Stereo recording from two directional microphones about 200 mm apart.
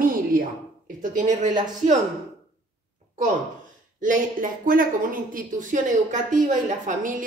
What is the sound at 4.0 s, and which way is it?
A woman's voice, 40° right (ahead or behind).